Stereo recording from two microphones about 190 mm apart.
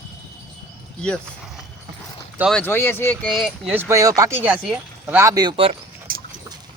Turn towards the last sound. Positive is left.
turn(degrees=-50)  # may be behind; listen again after turning